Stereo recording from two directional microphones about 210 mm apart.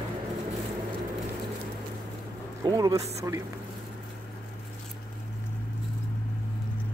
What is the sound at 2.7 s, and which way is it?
Speech, 15° right (ahead or behind).